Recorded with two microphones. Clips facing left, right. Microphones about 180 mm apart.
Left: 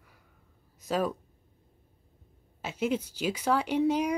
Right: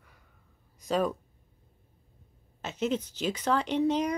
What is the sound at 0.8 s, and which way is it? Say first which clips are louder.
Speech: right 1 dB; 5° left (ahead or behind).